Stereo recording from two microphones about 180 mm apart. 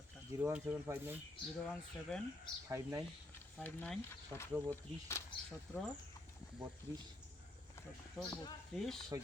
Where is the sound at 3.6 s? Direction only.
10° left (ahead or behind).